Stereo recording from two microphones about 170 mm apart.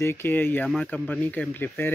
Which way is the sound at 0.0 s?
15° left (ahead or behind).